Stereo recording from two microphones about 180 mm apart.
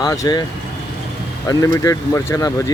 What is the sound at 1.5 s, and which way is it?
Speech, 20° left (ahead or behind).